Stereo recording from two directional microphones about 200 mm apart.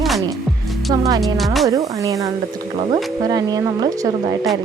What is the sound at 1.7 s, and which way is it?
Speech, 15° right (ahead or behind).